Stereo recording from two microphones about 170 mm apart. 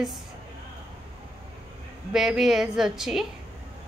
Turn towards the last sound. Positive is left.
turn(degrees=-5)  # may be behind; listen again after turning